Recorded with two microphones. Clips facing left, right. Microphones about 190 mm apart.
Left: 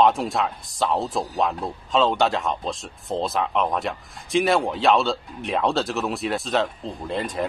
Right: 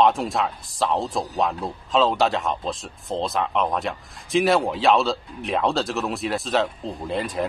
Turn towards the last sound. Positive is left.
turn(degrees=0)  # may be behind; listen again after turning